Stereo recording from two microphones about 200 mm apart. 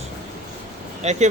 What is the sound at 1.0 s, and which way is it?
Speech, 35° right (ahead or behind).